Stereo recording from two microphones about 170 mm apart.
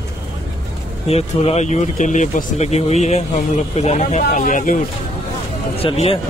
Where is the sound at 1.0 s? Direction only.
35° left (ahead or behind).